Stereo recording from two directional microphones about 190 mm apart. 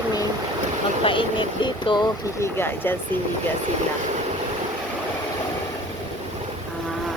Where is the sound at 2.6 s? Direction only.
10° left (ahead or behind).